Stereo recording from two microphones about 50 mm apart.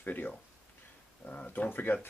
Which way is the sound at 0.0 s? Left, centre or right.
Left.